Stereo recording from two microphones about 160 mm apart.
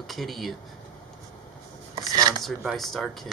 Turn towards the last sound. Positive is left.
turn(degrees=0)  # may be behind; listen again after turning